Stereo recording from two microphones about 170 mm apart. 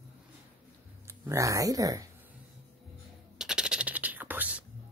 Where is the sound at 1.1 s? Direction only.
15° right (ahead or behind).